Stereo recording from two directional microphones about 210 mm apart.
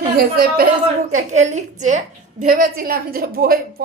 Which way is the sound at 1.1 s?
35° right (ahead or behind).